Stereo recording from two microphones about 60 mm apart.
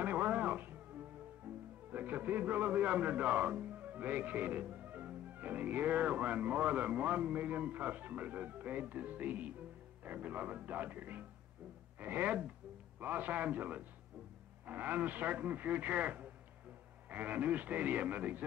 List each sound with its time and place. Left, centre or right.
0.0 s music: right
1.5 s music: right
1.9 s a man's voice: right